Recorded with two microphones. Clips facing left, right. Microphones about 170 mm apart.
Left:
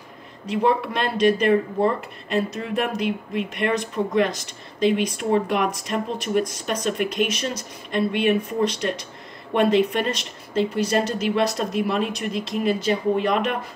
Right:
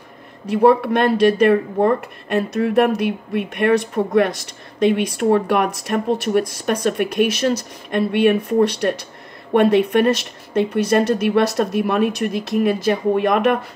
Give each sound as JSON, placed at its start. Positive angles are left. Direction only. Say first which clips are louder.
{"t": 0.5, "sound": "speech", "louder": "right 7 dB", "side_deg": -60}